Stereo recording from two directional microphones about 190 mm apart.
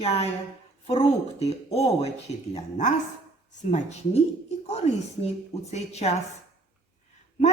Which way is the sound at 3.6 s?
35° left (ahead or behind).